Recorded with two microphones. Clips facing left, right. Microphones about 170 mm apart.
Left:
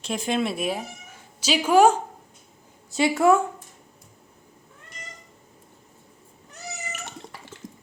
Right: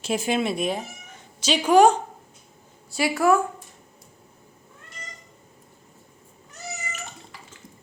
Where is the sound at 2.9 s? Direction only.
25° left (ahead or behind).